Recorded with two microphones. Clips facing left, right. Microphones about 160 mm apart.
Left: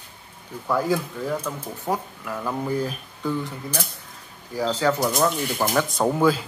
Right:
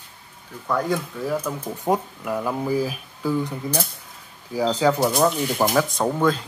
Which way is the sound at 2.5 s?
5° right (ahead or behind).